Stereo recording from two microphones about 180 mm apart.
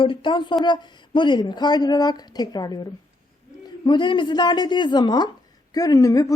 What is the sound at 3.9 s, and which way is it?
A woman's voice, 25° left (ahead or behind).